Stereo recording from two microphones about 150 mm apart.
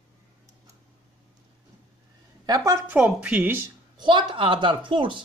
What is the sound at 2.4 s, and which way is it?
Speech, 25° right (ahead or behind).